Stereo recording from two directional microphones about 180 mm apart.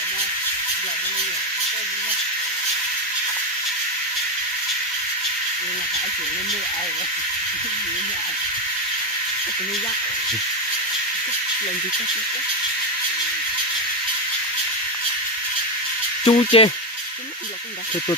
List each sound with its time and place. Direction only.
16.2 s speech: 30° left (ahead or behind)